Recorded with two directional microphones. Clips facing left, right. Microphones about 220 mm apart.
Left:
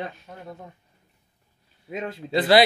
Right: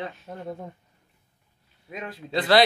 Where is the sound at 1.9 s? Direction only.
25° left (ahead or behind).